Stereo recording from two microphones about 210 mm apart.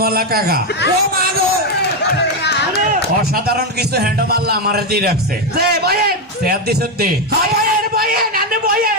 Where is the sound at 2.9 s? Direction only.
45° right (ahead or behind).